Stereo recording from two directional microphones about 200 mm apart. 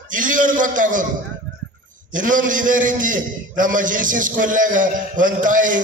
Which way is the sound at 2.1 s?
40° right (ahead or behind).